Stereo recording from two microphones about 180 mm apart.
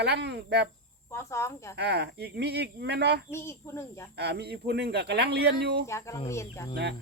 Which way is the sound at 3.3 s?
15° left (ahead or behind).